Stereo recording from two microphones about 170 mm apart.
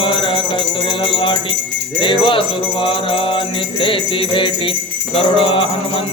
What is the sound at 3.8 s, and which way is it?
Music, 30° left (ahead or behind).